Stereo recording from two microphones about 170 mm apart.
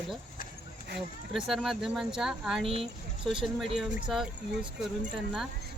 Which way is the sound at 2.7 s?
35° right (ahead or behind).